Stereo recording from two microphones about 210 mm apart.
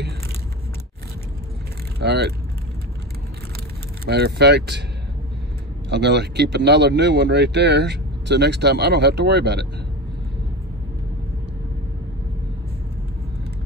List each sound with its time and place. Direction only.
2.0 s speech: 50° right (ahead or behind)
4.1 s speech: 50° right (ahead or behind)
5.9 s speech: 55° right (ahead or behind)